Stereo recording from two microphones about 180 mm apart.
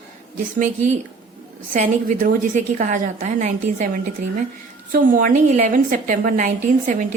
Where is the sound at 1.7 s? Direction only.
45° right (ahead or behind).